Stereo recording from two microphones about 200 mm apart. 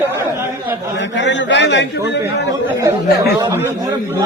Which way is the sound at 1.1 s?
60° left (ahead or behind).